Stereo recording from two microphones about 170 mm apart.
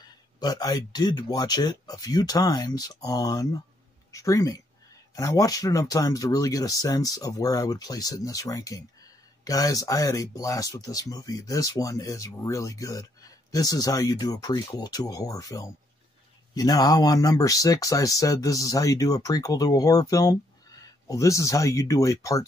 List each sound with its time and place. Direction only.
0.4 s speech: 20° left (ahead or behind)